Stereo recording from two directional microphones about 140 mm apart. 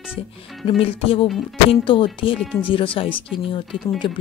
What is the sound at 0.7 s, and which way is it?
Music, 40° left (ahead or behind).